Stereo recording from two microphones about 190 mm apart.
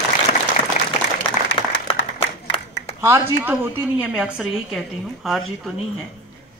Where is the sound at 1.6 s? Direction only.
25° left (ahead or behind).